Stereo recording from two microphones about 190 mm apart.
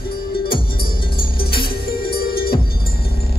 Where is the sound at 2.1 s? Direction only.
55° left (ahead or behind).